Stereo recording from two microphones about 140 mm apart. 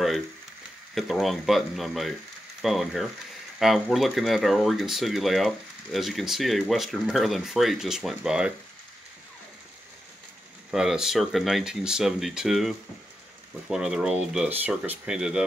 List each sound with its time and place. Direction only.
0.9 s speech: centre (ahead or behind)
10.7 s speech: 5° right (ahead or behind)